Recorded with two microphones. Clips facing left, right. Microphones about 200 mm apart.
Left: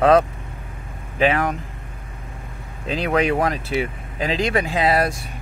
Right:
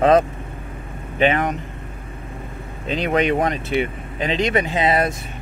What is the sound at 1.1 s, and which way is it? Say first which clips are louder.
Speech: right 1 dB; centre (ahead or behind).